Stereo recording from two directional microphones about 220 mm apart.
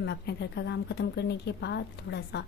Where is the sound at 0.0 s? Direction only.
50° left (ahead or behind).